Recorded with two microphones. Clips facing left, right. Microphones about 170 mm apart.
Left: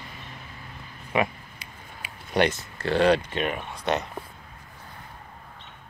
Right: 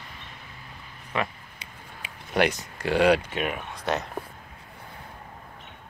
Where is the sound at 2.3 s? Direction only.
15° right (ahead or behind).